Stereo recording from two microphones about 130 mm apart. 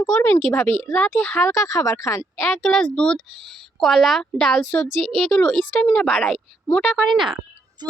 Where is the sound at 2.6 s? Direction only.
5° left (ahead or behind).